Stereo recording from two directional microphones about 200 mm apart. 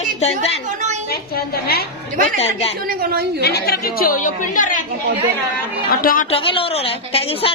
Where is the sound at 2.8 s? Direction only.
50° right (ahead or behind).